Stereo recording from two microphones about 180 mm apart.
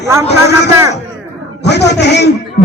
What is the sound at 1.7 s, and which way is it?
Speech, 70° left (ahead or behind).